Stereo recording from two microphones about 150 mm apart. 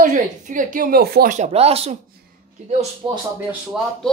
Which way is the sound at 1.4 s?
45° right (ahead or behind).